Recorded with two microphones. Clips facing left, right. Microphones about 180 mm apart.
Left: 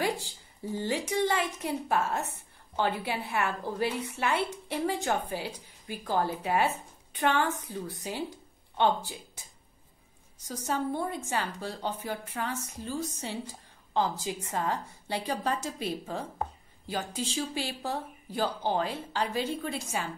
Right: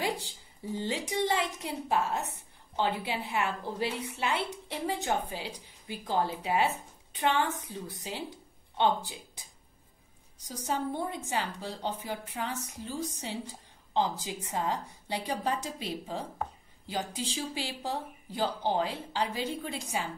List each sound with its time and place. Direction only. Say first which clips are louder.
0.0 s a sound: left 2 dB; 20° right (ahead or behind)
0.7 s speech: left 2 dB; 20° right (ahead or behind)
3.8 s a woman's voice: left 2 dB; 55° left (ahead or behind)
4.4 s a woman's voice: left 4 dB; 20° right (ahead or behind)
10.5 s speech: left 2 dB; 15° right (ahead or behind)